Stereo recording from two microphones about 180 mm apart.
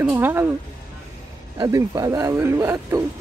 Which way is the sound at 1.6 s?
20° right (ahead or behind).